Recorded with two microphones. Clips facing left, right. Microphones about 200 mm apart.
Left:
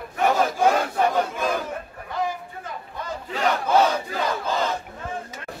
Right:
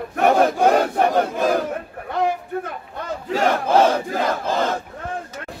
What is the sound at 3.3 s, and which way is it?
Battle cry, 45° right (ahead or behind).